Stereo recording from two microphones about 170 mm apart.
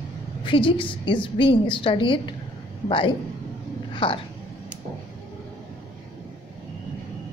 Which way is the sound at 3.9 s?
30° left (ahead or behind).